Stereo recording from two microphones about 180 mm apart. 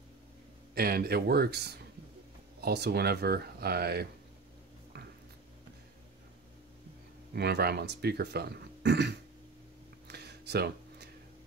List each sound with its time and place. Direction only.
0.7 s speech: 60° right (ahead or behind)
7.3 s speech: 65° right (ahead or behind)
10.0 s a sound: 65° right (ahead or behind)